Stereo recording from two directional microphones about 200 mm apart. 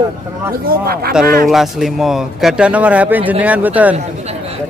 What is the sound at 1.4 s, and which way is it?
Speech, centre (ahead or behind).